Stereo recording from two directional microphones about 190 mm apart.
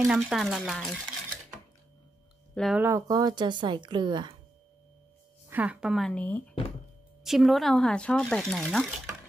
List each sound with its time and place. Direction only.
0.0 s stir: centre (ahead or behind)
2.5 s speech: centre (ahead or behind)
2.8 s a woman's voice: 15° right (ahead or behind)
5.5 s speech: 5° right (ahead or behind)